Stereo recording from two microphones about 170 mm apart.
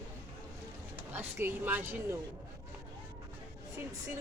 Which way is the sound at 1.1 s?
10° right (ahead or behind).